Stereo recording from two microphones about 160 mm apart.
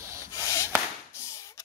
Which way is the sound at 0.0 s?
15° right (ahead or behind).